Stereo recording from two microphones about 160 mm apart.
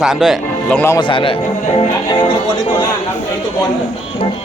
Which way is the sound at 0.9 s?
30° left (ahead or behind).